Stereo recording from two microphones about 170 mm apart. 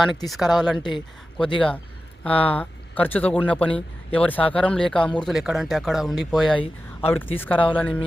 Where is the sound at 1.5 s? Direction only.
5° left (ahead or behind).